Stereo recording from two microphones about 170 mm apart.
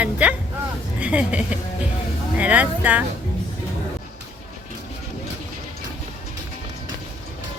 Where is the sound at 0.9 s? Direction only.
5° right (ahead or behind).